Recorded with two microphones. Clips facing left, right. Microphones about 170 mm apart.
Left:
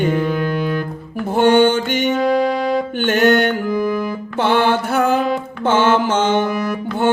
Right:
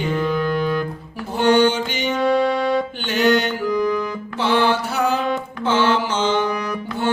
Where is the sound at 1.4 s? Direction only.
55° left (ahead or behind).